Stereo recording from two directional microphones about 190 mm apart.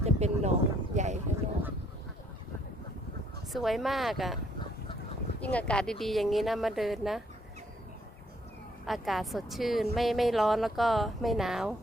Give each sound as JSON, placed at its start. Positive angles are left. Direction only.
{"t": 0.0, "sound": "a sound", "side_deg": -35}
{"t": 3.5, "sound": "a woman's voice", "side_deg": 0}
{"t": 5.4, "sound": "a woman's voice", "side_deg": 5}
{"t": 8.8, "sound": "a woman's voice", "side_deg": 0}